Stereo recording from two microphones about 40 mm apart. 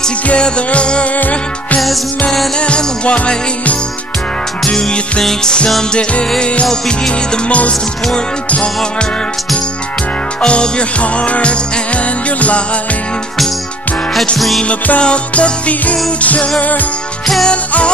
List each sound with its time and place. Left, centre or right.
0.3 s music: left
3.1 s music: left
4.7 s music: centre
10.4 s music: left
15.0 s music: left
17.5 s music: left